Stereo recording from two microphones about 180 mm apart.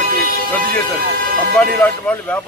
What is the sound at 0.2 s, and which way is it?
Music, 55° right (ahead or behind).